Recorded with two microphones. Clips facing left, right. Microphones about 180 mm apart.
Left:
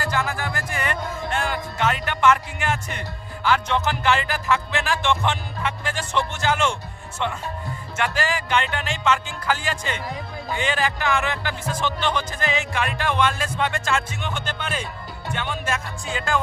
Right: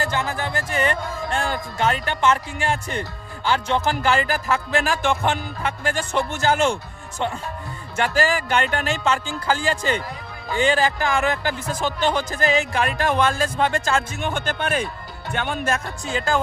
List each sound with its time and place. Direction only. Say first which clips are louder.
0.0 s speech: right 1 dB; 25° right (ahead or behind)